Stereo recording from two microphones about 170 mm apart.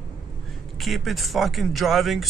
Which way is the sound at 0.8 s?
Centre (ahead or behind).